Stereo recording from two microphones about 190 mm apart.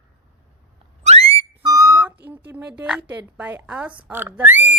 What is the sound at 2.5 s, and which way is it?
Speech, 5° right (ahead or behind).